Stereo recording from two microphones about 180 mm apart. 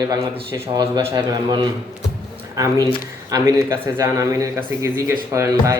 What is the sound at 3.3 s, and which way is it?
Speech, 20° right (ahead or behind).